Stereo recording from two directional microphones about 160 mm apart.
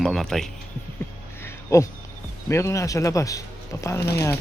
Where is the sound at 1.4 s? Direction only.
20° left (ahead or behind).